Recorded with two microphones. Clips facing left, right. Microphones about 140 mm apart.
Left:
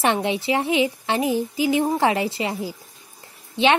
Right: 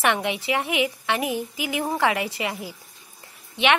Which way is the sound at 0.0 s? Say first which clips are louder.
Left 2 dB; 30° left (ahead or behind).